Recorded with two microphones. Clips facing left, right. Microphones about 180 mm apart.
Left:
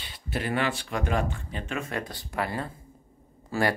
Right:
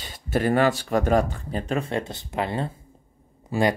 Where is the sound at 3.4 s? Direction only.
20° right (ahead or behind).